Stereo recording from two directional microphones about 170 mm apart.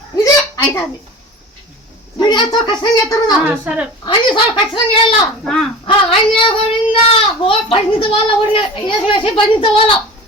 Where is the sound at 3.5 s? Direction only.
10° right (ahead or behind).